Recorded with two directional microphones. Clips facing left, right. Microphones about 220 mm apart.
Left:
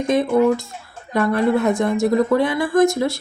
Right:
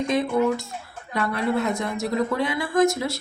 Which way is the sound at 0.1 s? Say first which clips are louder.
Left 7 dB; 50° left (ahead or behind).